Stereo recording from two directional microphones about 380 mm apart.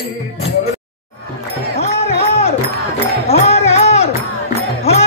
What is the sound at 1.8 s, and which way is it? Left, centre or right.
Music, centre.